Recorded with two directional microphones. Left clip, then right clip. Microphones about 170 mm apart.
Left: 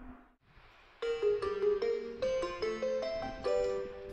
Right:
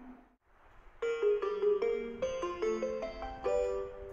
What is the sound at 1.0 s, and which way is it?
Music, 20° right (ahead or behind).